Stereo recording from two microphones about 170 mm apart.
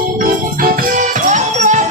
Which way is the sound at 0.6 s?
50° right (ahead or behind).